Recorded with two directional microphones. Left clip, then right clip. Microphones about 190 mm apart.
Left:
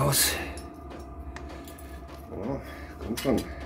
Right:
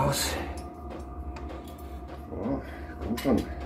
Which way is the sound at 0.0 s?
45° left (ahead or behind).